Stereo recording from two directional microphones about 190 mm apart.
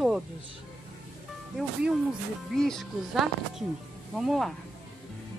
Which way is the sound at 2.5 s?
Centre (ahead or behind).